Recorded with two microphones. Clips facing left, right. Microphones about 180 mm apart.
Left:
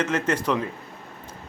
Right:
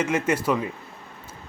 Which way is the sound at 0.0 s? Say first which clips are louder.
Right 1 dB; 10° right (ahead or behind).